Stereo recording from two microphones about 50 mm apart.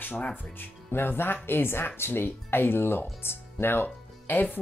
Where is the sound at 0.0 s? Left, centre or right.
Left.